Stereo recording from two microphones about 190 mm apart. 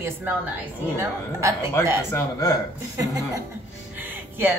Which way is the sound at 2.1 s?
15° left (ahead or behind).